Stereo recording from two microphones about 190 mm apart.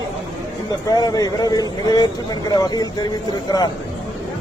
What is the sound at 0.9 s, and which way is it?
A man's voice, 20° left (ahead or behind).